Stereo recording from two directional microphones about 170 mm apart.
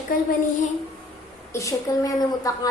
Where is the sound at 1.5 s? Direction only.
20° left (ahead or behind).